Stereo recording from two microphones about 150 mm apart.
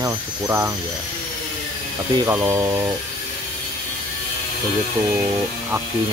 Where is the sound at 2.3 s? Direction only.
15° right (ahead or behind).